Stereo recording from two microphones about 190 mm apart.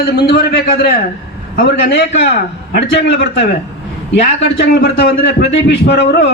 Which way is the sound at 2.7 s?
65° left (ahead or behind).